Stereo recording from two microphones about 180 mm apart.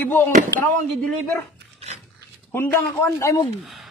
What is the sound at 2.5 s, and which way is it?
Speech, 15° left (ahead or behind).